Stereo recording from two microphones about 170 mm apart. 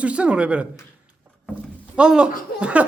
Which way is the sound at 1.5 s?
5° right (ahead or behind).